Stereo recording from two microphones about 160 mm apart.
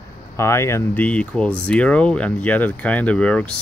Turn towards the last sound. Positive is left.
turn(degrees=5)  # may be behind; listen again after turning